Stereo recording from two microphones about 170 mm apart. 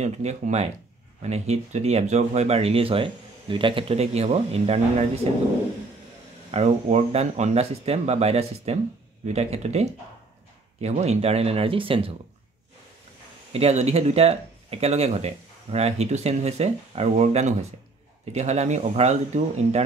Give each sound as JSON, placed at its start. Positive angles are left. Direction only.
{"t": 0.0, "sound": "speech", "side_deg": -40}
{"t": 6.5, "sound": "speech", "side_deg": -40}
{"t": 13.5, "sound": "speech", "side_deg": -35}